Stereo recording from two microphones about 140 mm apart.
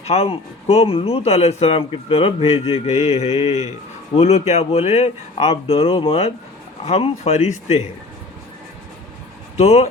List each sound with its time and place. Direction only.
0.0 s speech: 50° left (ahead or behind)
9.6 s speech: 50° left (ahead or behind)